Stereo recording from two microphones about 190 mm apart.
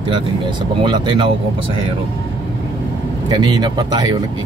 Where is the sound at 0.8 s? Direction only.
25° right (ahead or behind).